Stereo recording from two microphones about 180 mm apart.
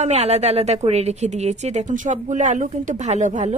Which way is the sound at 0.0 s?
40° right (ahead or behind).